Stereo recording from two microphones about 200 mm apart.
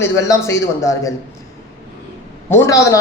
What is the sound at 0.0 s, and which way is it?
A man's voice, 15° left (ahead or behind).